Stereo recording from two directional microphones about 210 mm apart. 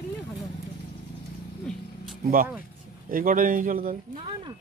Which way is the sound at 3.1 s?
40° right (ahead or behind).